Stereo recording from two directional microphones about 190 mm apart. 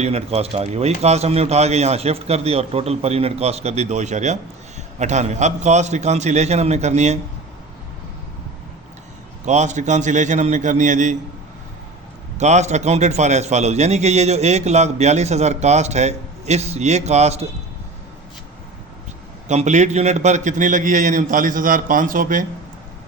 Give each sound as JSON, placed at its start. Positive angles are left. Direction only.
{"t": 0.0, "sound": "a man's voice", "side_deg": -35}
{"t": 9.5, "sound": "a man's voice", "side_deg": -40}
{"t": 12.4, "sound": "a man's voice", "side_deg": -35}
{"t": 19.5, "sound": "a man's voice", "side_deg": -35}